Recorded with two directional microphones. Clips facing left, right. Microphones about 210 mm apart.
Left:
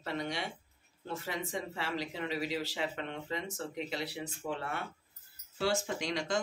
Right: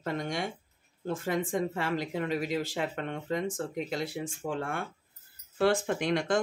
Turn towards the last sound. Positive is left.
turn(degrees=-55)  # may be behind; listen again after turning